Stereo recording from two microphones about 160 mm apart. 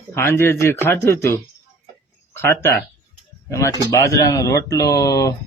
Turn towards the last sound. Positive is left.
turn(degrees=20)  # may be behind; listen again after turning